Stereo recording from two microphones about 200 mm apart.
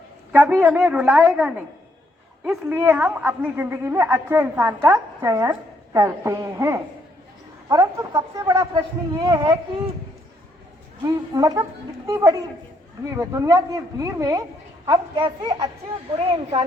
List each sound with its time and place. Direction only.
0.3 s a woman's voice: 10° right (ahead or behind)
11.0 s a woman's voice: 20° right (ahead or behind)